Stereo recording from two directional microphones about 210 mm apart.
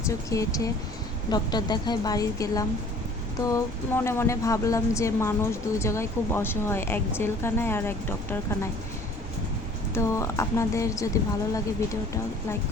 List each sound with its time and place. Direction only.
0.1 s a woman's voice: 15° left (ahead or behind)
9.9 s speech: 15° left (ahead or behind)